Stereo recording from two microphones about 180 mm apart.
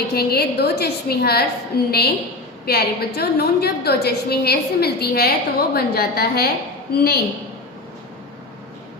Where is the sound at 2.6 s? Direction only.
60° left (ahead or behind).